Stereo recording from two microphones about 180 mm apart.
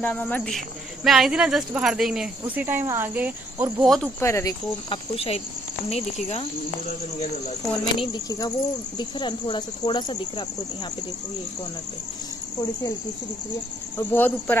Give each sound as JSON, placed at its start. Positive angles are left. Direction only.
{"t": 0.0, "sound": "speech", "side_deg": 10}
{"t": 3.8, "sound": "speech", "side_deg": 0}
{"t": 4.2, "sound": "speech", "side_deg": 15}
{"t": 7.8, "sound": "speech", "side_deg": 25}
{"t": 13.9, "sound": "speech", "side_deg": 10}